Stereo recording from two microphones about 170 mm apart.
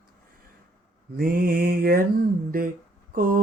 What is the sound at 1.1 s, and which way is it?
Mantra, 60° right (ahead or behind).